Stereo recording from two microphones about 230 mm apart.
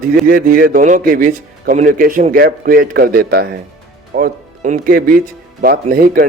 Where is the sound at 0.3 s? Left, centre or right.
Right.